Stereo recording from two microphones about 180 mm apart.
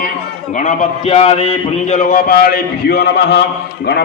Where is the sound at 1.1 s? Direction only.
35° left (ahead or behind).